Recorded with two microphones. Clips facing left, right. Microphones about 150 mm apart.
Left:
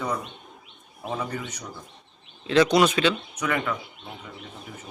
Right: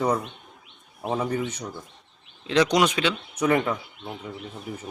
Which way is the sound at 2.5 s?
15° right (ahead or behind).